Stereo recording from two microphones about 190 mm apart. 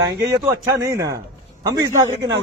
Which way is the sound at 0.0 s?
20° right (ahead or behind).